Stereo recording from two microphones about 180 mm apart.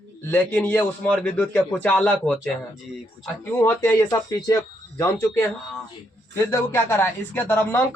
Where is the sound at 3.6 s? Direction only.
15° left (ahead or behind).